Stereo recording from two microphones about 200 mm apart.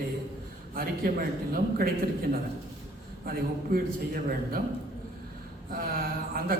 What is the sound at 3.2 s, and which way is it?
A man's voice, 50° right (ahead or behind).